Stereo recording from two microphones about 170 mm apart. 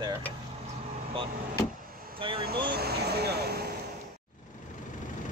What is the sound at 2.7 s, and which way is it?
Speech, 70° right (ahead or behind).